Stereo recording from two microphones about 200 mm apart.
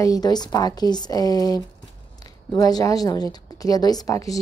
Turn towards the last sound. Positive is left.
turn(degrees=15)  # may be behind; listen again after turning